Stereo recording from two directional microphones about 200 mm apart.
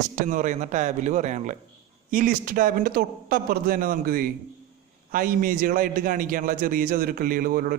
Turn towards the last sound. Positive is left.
turn(degrees=-45)  # may be behind; listen again after turning